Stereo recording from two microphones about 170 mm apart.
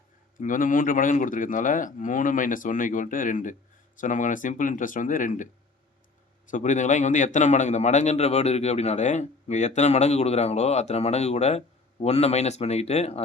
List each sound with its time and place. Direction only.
0.3 s speech: 50° left (ahead or behind)
6.5 s a man's voice: 45° left (ahead or behind)